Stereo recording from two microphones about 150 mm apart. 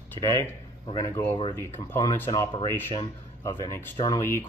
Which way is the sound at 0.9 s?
20° left (ahead or behind).